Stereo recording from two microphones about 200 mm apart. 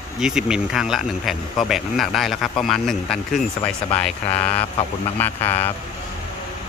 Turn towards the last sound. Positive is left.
turn(degrees=10)  # may be behind; listen again after turning